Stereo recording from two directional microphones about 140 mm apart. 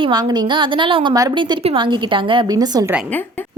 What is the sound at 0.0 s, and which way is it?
A woman's voice, 30° right (ahead or behind).